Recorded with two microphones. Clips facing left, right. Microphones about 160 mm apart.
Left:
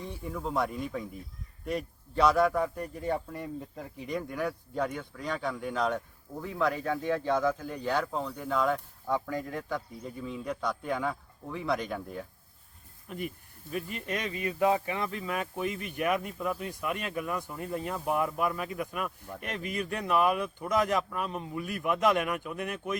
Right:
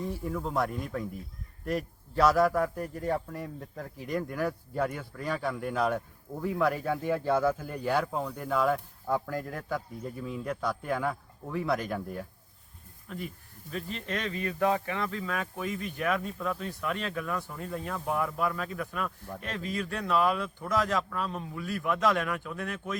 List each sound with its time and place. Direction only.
0.0 s speech: centre (ahead or behind)
13.1 s speech: 15° left (ahead or behind)